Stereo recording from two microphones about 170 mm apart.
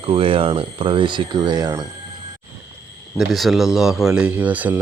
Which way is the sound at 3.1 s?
Centre (ahead or behind).